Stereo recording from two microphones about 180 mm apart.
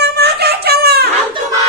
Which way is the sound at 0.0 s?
65° right (ahead or behind).